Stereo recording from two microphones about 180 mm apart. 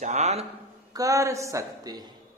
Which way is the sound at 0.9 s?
20° right (ahead or behind).